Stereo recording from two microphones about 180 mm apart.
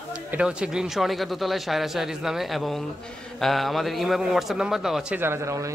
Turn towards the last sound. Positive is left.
turn(degrees=-15)  # may be behind; listen again after turning